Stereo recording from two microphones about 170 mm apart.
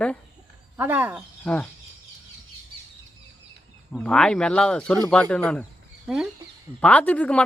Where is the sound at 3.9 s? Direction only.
5° left (ahead or behind).